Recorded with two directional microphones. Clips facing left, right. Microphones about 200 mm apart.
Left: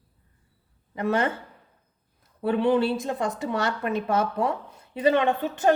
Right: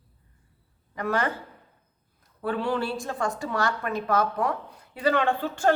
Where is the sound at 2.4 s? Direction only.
20° left (ahead or behind).